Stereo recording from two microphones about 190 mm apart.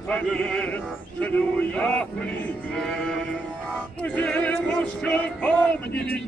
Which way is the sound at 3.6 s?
5° left (ahead or behind).